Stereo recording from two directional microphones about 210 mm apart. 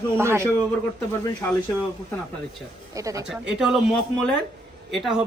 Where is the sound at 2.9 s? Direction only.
15° right (ahead or behind).